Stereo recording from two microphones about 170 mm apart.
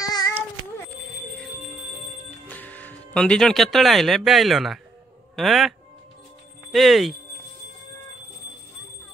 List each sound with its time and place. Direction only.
0.0 s child singing: 20° left (ahead or behind)
2.4 s speech: 10° left (ahead or behind)